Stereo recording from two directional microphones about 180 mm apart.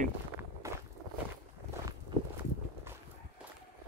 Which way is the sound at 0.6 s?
15° right (ahead or behind).